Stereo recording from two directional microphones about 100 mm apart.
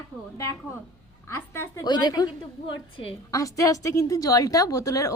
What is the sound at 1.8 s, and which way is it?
Speech, 45° left (ahead or behind).